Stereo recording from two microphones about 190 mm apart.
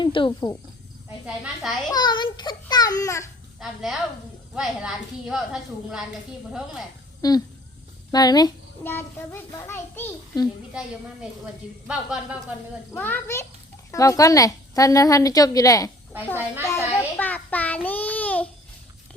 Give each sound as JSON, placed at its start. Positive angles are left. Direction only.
{"t": 0.0, "sound": "a child's voice", "side_deg": 25}
{"t": 1.9, "sound": "a child's voice", "side_deg": 20}
{"t": 3.6, "sound": "a woman's voice", "side_deg": 0}
{"t": 7.2, "sound": "a child's voice", "side_deg": 20}
{"t": 11.9, "sound": "a woman's voice", "side_deg": -5}
{"t": 13.0, "sound": "a child's voice", "side_deg": 10}